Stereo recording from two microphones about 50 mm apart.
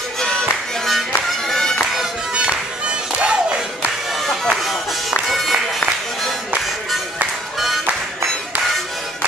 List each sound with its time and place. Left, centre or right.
0.2 s music: centre
1.5 s music: centre
3.2 s music: right
4.3 s bagpipes: centre
5.3 s music: centre